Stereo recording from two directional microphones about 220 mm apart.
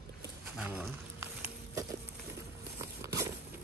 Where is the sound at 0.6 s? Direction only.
5° right (ahead or behind).